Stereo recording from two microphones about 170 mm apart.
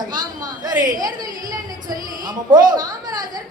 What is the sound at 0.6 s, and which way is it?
Speech, 25° right (ahead or behind).